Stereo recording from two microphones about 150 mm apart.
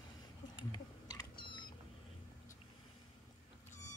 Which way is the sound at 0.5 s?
30° left (ahead or behind).